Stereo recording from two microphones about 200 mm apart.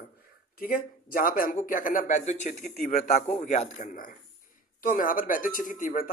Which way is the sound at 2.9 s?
35° left (ahead or behind).